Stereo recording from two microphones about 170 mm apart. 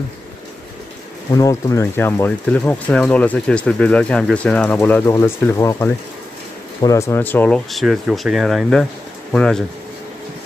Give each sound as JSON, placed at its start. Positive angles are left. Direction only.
{"t": 1.3, "sound": "speech", "side_deg": 20}